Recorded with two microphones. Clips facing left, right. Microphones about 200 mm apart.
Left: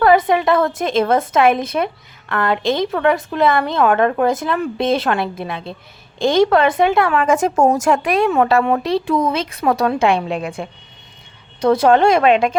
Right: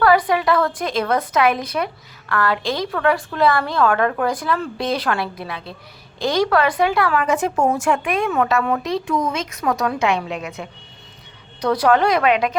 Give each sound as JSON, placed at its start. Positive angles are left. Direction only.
{"t": 0.0, "sound": "a woman's voice", "side_deg": 25}
{"t": 7.3, "sound": "a woman's voice", "side_deg": 45}